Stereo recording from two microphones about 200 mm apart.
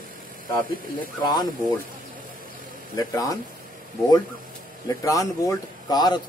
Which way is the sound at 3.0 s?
15° left (ahead or behind).